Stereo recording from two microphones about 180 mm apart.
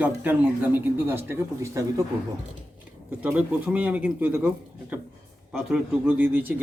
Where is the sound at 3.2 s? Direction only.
10° right (ahead or behind).